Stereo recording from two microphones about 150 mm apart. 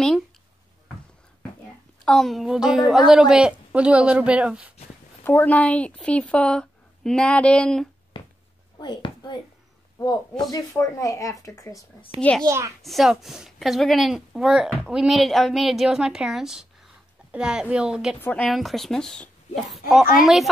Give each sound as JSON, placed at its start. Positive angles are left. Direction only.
{"t": 2.0, "sound": "speech", "side_deg": 0}
{"t": 5.2, "sound": "a woman's voice", "side_deg": 10}
{"t": 8.2, "sound": "a sound", "side_deg": 35}
{"t": 8.7, "sound": "speech", "side_deg": 30}
{"t": 12.2, "sound": "a woman's voice", "side_deg": 10}
{"t": 12.4, "sound": "a child's voice", "side_deg": -20}
{"t": 12.8, "sound": "speech", "side_deg": 0}
{"t": 18.2, "sound": "speech", "side_deg": 5}